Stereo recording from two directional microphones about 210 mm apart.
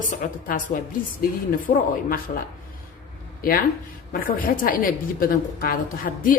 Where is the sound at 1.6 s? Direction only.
40° left (ahead or behind).